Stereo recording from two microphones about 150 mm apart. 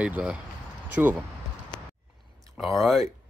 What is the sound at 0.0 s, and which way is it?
Speech, 5° right (ahead or behind).